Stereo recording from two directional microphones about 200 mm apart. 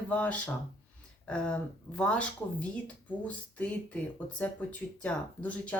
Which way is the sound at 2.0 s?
5° left (ahead or behind).